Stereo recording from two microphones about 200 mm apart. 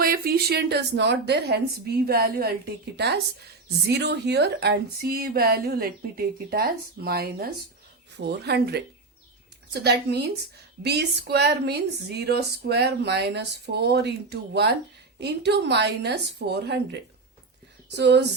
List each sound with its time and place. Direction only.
0.0 s speech: 50° right (ahead or behind)